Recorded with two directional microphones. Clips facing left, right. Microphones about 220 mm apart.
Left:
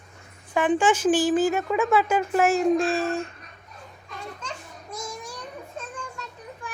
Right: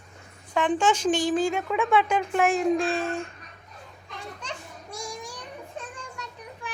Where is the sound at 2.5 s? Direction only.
45° left (ahead or behind).